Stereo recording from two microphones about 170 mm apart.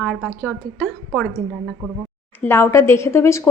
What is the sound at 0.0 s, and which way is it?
A woman's voice, centre (ahead or behind).